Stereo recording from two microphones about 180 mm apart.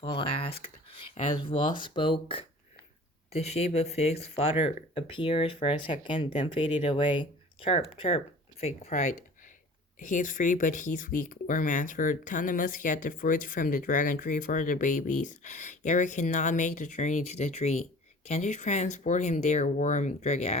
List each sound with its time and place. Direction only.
0.0 s speech: 30° left (ahead or behind)